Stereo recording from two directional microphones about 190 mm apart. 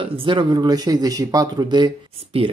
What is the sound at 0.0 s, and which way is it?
Speech, 25° right (ahead or behind).